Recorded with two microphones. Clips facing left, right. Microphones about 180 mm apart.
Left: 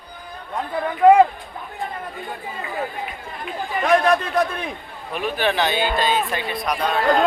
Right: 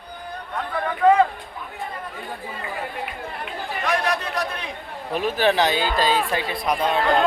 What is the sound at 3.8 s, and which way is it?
Chatter, 55° left (ahead or behind).